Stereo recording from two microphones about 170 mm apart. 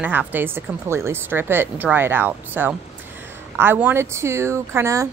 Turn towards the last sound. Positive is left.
turn(degrees=-15)  # may be behind; listen again after turning